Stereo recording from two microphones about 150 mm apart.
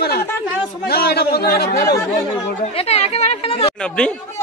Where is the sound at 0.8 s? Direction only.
90° left.